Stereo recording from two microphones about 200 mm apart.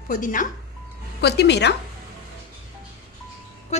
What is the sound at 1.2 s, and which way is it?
Speech, 55° left (ahead or behind).